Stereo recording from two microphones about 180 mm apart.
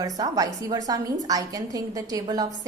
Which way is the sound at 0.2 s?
20° right (ahead or behind).